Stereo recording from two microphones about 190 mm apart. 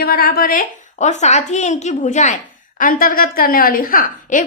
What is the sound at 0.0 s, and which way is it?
A woman's voice, 55° left (ahead or behind).